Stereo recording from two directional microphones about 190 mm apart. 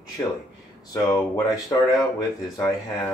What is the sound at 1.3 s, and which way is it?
Speech, 20° left (ahead or behind).